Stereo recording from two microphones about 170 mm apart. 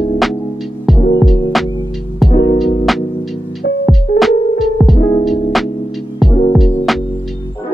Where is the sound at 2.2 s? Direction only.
30° left (ahead or behind).